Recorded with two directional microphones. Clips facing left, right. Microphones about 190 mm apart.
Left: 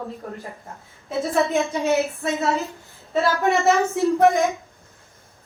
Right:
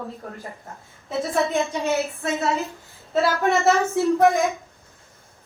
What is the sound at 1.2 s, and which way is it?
A woman's voice, centre (ahead or behind).